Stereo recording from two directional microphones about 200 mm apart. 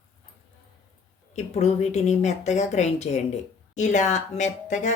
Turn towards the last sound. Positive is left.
turn(degrees=35)  # may be behind; listen again after turning